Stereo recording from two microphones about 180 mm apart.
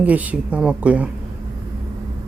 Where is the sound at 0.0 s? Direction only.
10° right (ahead or behind).